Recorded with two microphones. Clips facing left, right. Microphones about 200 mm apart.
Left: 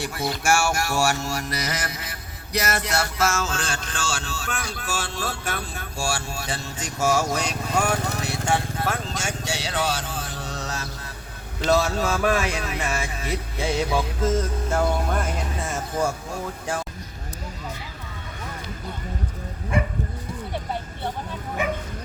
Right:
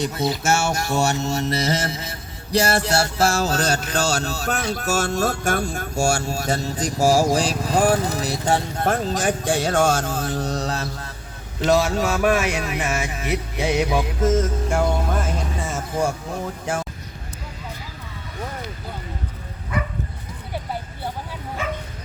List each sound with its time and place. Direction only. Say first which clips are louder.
0.0 s music: right 4 dB; 20° right (ahead or behind); by 4.6 s 40° right (ahead or behind)
4.7 s speech: right 8 dB; 40° right (ahead or behind)
11.7 s music: right 2 dB; 15° right (ahead or behind)
15.1 s music: right 2 dB; centre (ahead or behind)
19.7 s livestock: left 2 dB; 25° left (ahead or behind)
21.6 s bow-wow: left 2 dB; 15° left (ahead or behind)